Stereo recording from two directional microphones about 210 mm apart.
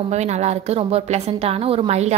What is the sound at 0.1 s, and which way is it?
A woman's voice, 30° right (ahead or behind).